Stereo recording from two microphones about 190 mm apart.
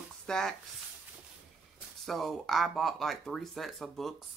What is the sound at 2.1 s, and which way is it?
Speech, centre (ahead or behind).